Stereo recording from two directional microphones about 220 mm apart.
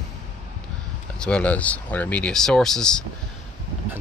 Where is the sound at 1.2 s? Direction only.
5° left (ahead or behind).